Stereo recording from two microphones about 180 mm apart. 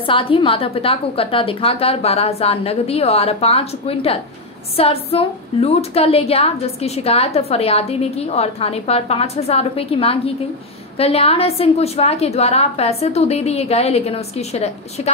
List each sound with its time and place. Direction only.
0.0 s a woman's voice: 30° left (ahead or behind)